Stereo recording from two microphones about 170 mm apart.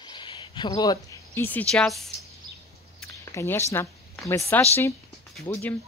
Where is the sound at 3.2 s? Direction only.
15° left (ahead or behind).